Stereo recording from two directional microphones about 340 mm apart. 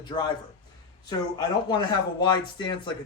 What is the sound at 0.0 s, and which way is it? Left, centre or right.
A man's voice, centre.